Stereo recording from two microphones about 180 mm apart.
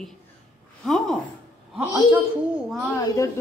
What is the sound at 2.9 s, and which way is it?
Speech, 20° left (ahead or behind).